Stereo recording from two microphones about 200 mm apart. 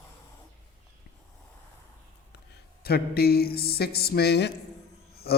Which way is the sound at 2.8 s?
50° left (ahead or behind).